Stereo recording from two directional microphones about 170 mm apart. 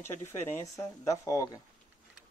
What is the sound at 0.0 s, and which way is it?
Speech, 15° left (ahead or behind).